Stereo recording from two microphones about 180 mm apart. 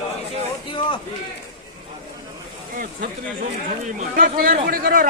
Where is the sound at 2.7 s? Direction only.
50° right (ahead or behind).